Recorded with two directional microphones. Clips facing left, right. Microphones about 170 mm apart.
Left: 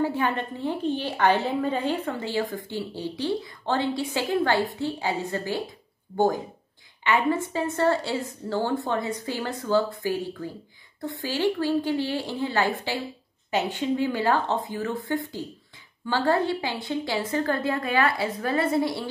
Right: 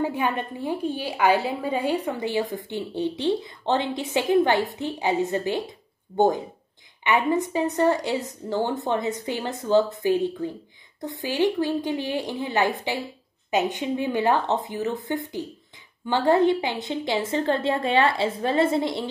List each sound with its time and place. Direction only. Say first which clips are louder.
0.0 s a woman's voice: even; 15° right (ahead or behind)